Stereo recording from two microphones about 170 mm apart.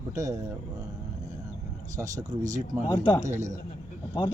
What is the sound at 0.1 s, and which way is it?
Speech, 20° right (ahead or behind).